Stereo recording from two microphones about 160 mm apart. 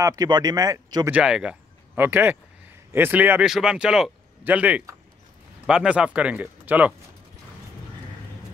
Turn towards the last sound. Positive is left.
turn(degrees=-10)  # may be behind; listen again after turning